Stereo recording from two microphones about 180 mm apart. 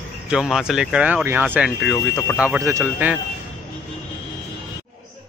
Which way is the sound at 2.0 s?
15° left (ahead or behind).